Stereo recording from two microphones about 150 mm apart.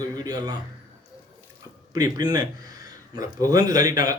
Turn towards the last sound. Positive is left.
turn(degrees=-25)  # may be behind; listen again after turning